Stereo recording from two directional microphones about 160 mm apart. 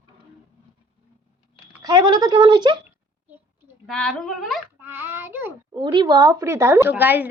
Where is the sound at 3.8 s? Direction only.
Centre (ahead or behind).